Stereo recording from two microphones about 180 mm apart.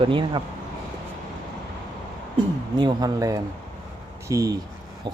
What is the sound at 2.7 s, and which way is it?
Speech, 20° right (ahead or behind).